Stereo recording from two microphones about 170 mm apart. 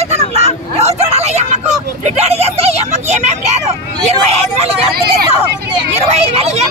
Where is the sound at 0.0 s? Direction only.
40° right (ahead or behind).